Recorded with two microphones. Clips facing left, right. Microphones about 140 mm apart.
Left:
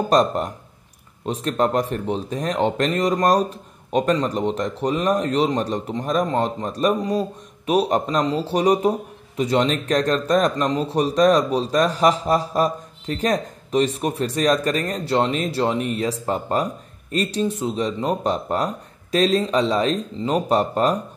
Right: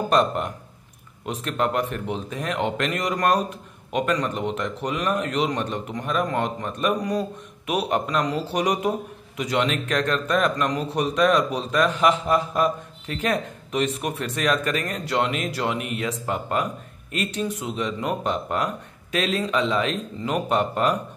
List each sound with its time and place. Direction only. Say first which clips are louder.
0.1 s speech: left 3 dB; 35° left (ahead or behind)